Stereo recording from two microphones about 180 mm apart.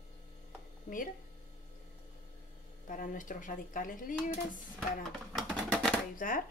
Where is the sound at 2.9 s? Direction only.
50° left (ahead or behind).